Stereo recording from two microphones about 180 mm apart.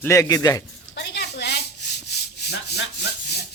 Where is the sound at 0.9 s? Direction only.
70° left (ahead or behind).